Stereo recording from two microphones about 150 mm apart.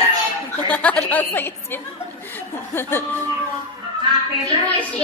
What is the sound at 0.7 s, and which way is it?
Chuckle, 10° left (ahead or behind).